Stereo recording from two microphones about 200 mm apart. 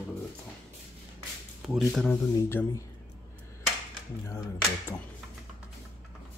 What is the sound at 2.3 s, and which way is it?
Speech, 15° left (ahead or behind).